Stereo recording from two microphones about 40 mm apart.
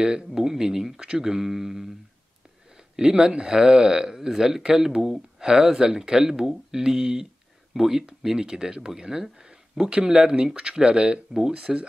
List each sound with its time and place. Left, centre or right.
0.0 s speech: centre
3.0 s speech: centre